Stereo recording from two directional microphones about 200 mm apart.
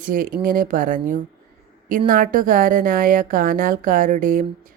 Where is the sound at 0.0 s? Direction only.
45° right (ahead or behind).